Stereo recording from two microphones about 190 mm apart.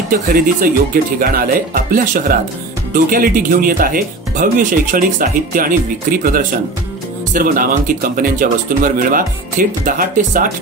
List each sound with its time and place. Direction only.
0.1 s speech: 45° right (ahead or behind)